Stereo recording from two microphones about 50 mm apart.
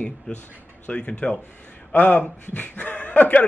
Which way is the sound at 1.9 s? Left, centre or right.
Left.